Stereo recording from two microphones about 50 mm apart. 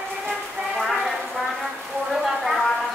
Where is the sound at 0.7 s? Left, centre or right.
Centre.